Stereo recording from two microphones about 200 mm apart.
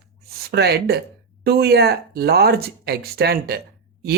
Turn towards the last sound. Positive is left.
turn(degrees=-50)  # may be behind; listen again after turning